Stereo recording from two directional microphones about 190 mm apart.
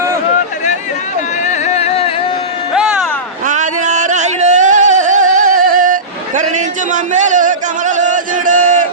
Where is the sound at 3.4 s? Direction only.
40° right (ahead or behind).